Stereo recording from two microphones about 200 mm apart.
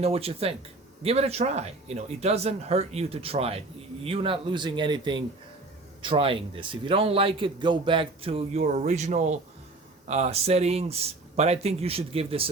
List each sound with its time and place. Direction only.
0.0 s a man's voice: 30° right (ahead or behind)